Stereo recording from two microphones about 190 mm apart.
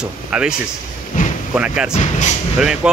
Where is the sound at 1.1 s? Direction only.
45° left (ahead or behind).